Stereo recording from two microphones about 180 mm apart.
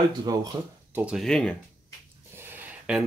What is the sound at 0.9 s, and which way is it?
Speech, 5° right (ahead or behind).